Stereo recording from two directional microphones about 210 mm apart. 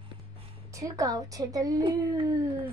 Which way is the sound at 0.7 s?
15° right (ahead or behind).